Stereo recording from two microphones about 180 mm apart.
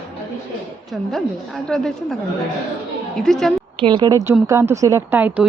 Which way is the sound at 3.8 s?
25° right (ahead or behind).